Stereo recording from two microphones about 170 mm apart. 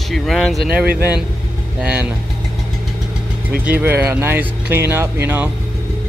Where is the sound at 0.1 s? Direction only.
Centre (ahead or behind).